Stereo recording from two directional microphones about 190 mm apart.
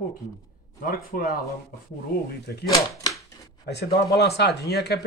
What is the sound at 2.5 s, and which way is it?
Speech, 60° left (ahead or behind).